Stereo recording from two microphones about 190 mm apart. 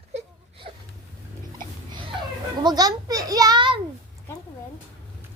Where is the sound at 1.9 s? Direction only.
25° right (ahead or behind).